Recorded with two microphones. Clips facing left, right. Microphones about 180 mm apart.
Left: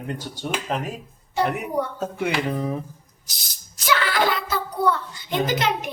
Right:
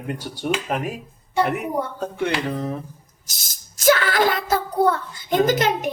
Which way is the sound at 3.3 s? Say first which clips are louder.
Even; 45° right (ahead or behind).